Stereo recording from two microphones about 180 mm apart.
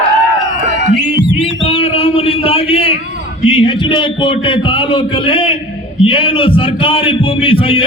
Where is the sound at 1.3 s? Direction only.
30° left (ahead or behind).